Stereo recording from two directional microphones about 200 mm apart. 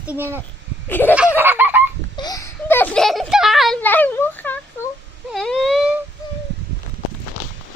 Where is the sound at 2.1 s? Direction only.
20° left (ahead or behind); by 3.8 s centre (ahead or behind).